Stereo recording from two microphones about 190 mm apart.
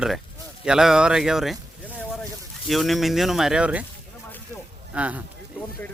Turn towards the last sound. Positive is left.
turn(degrees=-5)  # may be behind; listen again after turning